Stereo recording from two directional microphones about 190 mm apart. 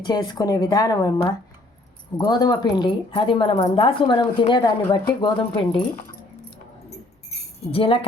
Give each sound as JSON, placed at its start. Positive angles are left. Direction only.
{"t": 0.0, "sound": "speech", "side_deg": 20}
{"t": 2.1, "sound": "speech", "side_deg": 20}
{"t": 7.7, "sound": "speech", "side_deg": 30}